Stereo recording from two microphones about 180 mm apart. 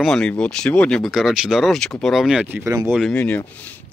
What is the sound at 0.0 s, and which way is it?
Speech, 5° left (ahead or behind).